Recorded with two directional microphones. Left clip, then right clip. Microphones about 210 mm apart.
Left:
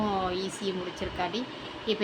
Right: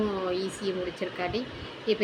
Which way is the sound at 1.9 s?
15° left (ahead or behind).